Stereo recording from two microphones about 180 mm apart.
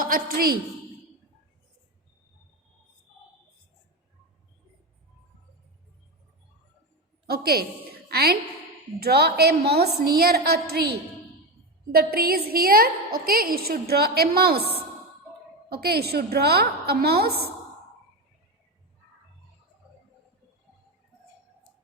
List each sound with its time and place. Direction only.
0.0 s a woman's voice: 55° right (ahead or behind)
7.3 s a woman's voice: 60° right (ahead or behind)
15.7 s a woman's voice: 60° right (ahead or behind)